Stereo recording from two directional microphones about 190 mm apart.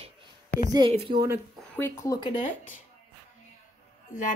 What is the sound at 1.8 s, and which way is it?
Speech, 15° left (ahead or behind).